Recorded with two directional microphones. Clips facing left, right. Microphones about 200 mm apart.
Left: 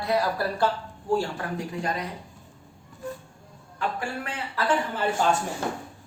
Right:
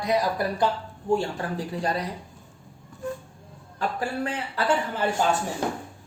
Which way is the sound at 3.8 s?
35° right (ahead or behind).